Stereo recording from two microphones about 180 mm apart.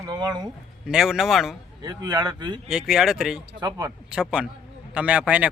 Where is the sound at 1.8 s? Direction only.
25° right (ahead or behind).